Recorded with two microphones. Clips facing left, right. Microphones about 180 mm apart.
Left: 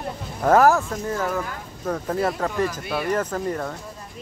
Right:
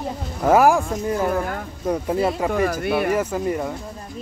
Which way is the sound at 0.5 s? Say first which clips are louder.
Right 1 dB; 10° right (ahead or behind).